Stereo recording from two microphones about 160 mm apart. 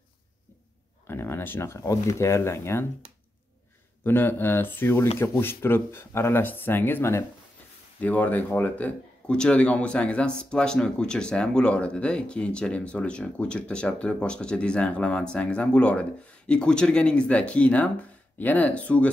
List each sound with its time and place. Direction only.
1.0 s speech: 15° left (ahead or behind)
4.0 s speech: 15° left (ahead or behind)